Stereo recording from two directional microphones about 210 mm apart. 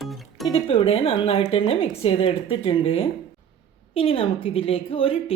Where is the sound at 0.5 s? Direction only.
25° left (ahead or behind).